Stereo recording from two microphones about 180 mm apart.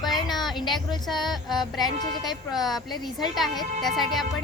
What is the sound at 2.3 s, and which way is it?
A woman's voice, centre (ahead or behind).